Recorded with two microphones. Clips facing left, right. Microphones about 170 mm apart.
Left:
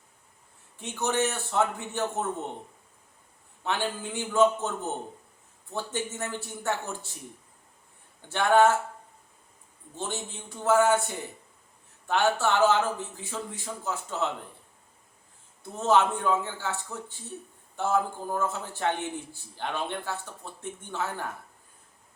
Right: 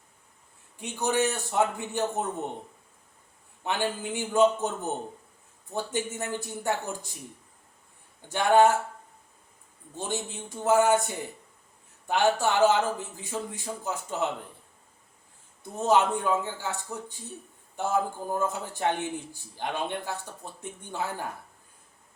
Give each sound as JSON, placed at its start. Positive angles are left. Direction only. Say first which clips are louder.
{"t": 0.8, "sound": "a man's voice", "louder": "right 1 dB", "side_deg": -15}
{"t": 3.6, "sound": "a man's voice", "louder": "right 1 dB", "side_deg": -15}
{"t": 8.3, "sound": "a man's voice", "louder": "right 1 dB", "side_deg": -15}
{"t": 9.9, "sound": "a man's voice", "louder": "right 2 dB", "side_deg": -15}
{"t": 15.7, "sound": "a man's voice", "louder": "even", "side_deg": -15}